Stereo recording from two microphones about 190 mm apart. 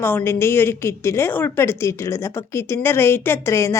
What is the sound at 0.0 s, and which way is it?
A woman's voice, 10° left (ahead or behind).